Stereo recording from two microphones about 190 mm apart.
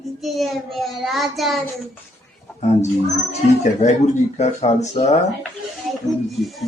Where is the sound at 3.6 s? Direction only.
40° left (ahead or behind).